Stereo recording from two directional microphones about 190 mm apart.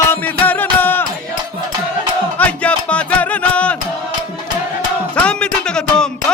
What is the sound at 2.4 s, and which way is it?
Music, 5° left (ahead or behind).